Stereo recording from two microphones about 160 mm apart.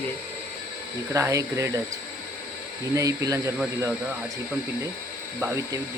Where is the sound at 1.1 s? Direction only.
20° right (ahead or behind).